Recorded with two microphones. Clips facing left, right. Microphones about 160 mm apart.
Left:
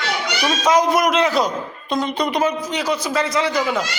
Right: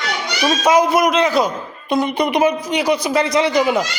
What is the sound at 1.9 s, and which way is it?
A man's voice, 10° right (ahead or behind).